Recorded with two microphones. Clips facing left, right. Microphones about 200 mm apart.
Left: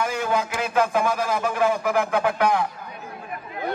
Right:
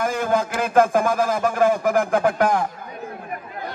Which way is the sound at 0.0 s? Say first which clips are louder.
Right 3 dB; 50° right (ahead or behind).